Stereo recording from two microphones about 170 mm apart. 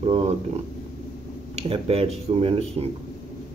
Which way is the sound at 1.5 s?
35° right (ahead or behind).